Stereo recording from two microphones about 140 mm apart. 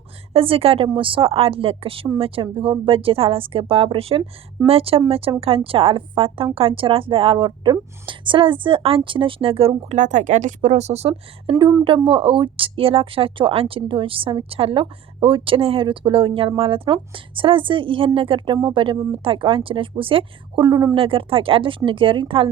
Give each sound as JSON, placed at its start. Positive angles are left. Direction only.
{"t": 0.3, "sound": "a woman's voice", "side_deg": -40}
{"t": 10.0, "sound": "a woman's voice", "side_deg": -60}
{"t": 11.5, "sound": "a woman's voice", "side_deg": -25}
{"t": 12.0, "sound": "a woman's voice", "side_deg": -40}
{"t": 20.9, "sound": "a woman's voice", "side_deg": -40}